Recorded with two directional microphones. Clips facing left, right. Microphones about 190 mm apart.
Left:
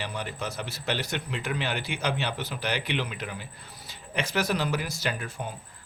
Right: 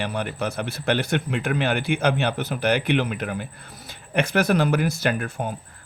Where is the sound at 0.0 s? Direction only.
60° right (ahead or behind).